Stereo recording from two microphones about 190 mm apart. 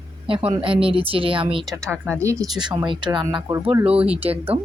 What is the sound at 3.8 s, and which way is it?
Speech, 5° right (ahead or behind).